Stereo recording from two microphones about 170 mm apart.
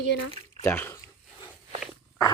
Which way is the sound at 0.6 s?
15° left (ahead or behind).